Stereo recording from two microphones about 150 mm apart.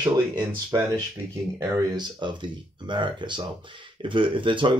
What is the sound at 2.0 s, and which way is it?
Speech, 30° right (ahead or behind).